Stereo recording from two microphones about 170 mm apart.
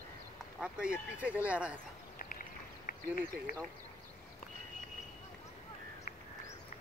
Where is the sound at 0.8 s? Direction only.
5° right (ahead or behind).